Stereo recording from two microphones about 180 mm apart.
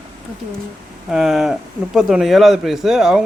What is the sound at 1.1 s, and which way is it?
Speech, centre (ahead or behind).